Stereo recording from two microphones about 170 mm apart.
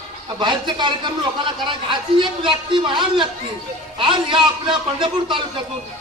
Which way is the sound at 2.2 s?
30° right (ahead or behind).